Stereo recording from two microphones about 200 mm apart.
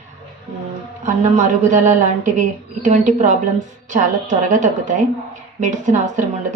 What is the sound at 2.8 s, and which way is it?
Speech, 40° right (ahead or behind).